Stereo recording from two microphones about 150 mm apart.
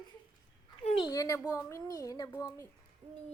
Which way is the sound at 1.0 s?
20° left (ahead or behind).